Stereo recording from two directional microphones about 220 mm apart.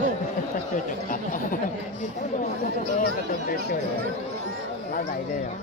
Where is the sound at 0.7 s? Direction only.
35° left (ahead or behind).